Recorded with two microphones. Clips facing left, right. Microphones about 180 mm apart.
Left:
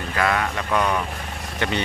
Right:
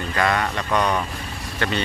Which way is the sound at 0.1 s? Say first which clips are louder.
Even; 5° left (ahead or behind).